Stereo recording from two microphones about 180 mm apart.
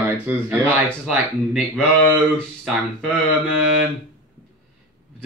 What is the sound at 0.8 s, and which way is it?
Speech, centre (ahead or behind).